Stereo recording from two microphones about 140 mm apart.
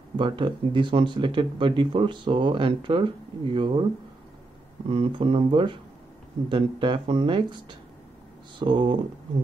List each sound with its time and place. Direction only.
0.2 s speech: 35° right (ahead or behind)
4.8 s speech: 45° right (ahead or behind)